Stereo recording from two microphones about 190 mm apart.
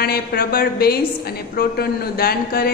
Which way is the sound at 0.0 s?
55° left (ahead or behind).